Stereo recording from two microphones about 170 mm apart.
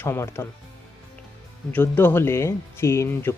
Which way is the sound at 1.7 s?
10° left (ahead or behind).